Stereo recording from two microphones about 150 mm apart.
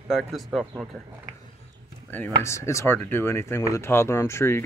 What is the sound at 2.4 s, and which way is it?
Speech, 20° left (ahead or behind).